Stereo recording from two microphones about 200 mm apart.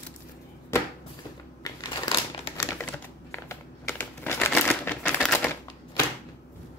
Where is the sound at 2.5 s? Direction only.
15° left (ahead or behind).